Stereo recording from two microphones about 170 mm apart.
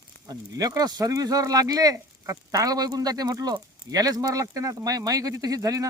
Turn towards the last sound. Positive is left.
turn(degrees=-20)  # may be behind; listen again after turning